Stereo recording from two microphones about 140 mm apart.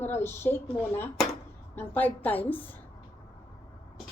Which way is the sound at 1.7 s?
15° left (ahead or behind).